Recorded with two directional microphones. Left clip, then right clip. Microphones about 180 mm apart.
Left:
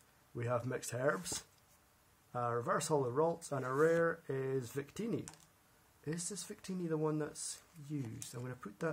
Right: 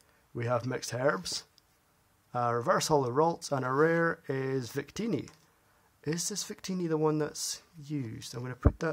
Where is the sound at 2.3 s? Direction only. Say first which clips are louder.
Right 8 dB; 35° right (ahead or behind).